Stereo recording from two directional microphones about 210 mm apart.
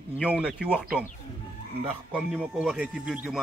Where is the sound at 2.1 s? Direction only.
5° right (ahead or behind).